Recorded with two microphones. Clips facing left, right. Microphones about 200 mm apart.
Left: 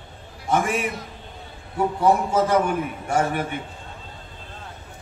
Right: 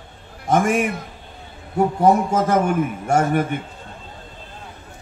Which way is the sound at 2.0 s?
50° right (ahead or behind).